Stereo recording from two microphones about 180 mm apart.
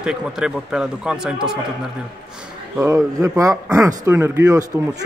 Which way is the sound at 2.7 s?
15° right (ahead or behind).